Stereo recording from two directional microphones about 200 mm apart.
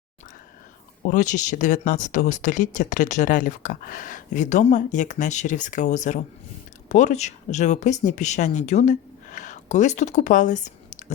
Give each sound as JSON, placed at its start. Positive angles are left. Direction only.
{"t": 1.0, "sound": "speech", "side_deg": 40}